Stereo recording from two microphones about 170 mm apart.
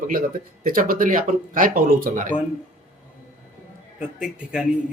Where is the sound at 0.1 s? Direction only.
55° right (ahead or behind).